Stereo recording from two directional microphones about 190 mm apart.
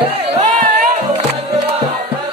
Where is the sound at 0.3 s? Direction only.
40° right (ahead or behind).